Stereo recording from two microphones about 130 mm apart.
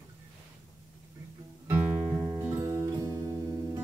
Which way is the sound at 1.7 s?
20° right (ahead or behind).